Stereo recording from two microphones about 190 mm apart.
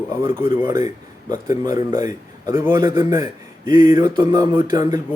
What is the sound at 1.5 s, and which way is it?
A man's voice, 20° right (ahead or behind).